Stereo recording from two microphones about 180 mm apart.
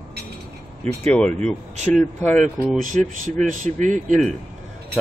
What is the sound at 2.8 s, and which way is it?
Speech, 45° right (ahead or behind).